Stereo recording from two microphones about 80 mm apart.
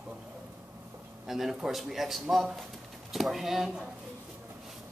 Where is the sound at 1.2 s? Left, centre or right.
Centre.